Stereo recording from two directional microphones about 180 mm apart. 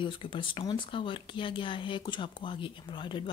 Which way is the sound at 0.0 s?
30° left (ahead or behind).